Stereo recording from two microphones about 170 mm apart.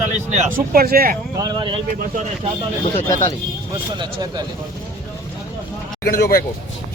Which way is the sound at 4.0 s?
25° right (ahead or behind).